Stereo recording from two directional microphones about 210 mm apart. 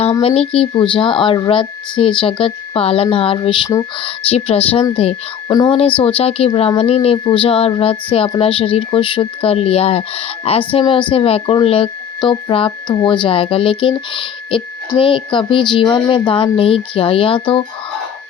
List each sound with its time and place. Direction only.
0.0 s speech: 25° left (ahead or behind)